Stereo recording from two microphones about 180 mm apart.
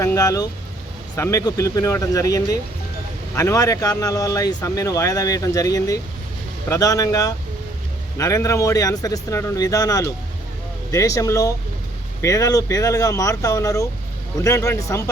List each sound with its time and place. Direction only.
0.0 s speech: 20° left (ahead or behind)